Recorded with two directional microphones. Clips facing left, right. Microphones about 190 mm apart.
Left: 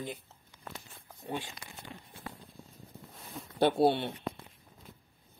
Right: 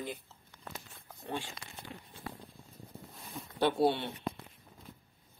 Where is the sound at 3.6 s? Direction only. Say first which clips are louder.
Left 3 dB; 40° left (ahead or behind).